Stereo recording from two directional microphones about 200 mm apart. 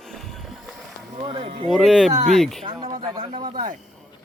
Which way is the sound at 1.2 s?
25° right (ahead or behind).